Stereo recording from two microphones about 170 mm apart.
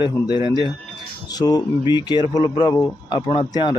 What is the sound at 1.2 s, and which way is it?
Speech, 25° left (ahead or behind).